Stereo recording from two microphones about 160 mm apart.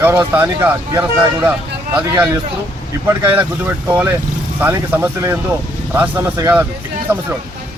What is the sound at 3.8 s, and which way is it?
Speech, 10° right (ahead or behind).